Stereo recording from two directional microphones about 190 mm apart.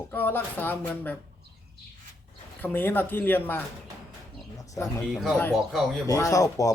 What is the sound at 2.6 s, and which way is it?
Speech, 10° left (ahead or behind).